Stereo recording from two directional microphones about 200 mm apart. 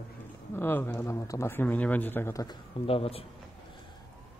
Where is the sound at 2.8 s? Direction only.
30° left (ahead or behind).